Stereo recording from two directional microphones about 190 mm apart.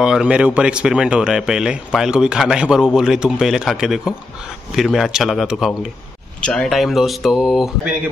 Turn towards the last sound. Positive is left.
turn(degrees=0)  # may be behind; listen again after turning